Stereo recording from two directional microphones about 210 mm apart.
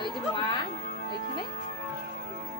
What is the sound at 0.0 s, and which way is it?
Music, 20° left (ahead or behind).